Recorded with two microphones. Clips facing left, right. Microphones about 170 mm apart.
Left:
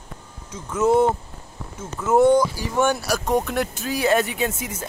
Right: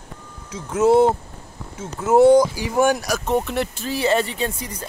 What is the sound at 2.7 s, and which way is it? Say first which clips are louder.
Speech: right 3 dB; 10° right (ahead or behind).